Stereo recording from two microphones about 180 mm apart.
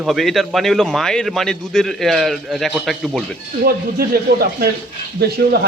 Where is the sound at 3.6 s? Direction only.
60° right (ahead or behind).